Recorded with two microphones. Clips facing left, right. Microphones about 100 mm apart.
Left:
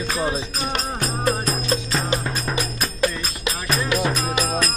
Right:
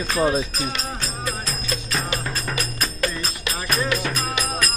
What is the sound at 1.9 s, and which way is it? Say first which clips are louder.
Music: left 3 dB; 20° left (ahead or behind).